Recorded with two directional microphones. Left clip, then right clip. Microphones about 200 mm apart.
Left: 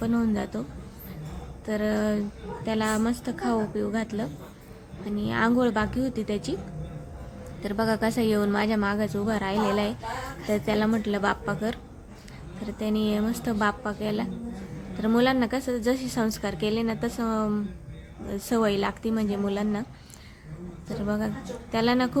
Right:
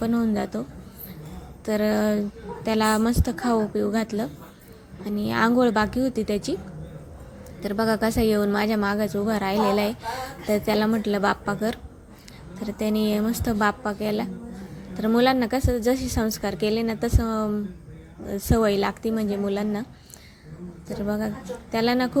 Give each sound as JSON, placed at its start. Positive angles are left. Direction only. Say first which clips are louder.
{"t": 0.0, "sound": "a woman's voice", "louder": "right 3 dB", "side_deg": -15}
{"t": 1.6, "sound": "a woman's voice", "louder": "right 4 dB", "side_deg": -20}
{"t": 7.6, "sound": "a woman's voice", "louder": "right 3 dB", "side_deg": -15}
{"t": 20.9, "sound": "a woman's voice", "louder": "right 2 dB", "side_deg": -10}